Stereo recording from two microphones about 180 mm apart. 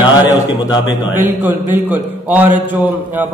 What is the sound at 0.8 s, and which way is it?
A man's voice, 10° right (ahead or behind).